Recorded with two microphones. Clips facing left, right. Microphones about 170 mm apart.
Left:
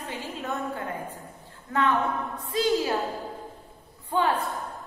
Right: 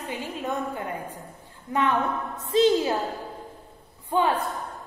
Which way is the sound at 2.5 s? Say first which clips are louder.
Right 5 dB; 25° right (ahead or behind).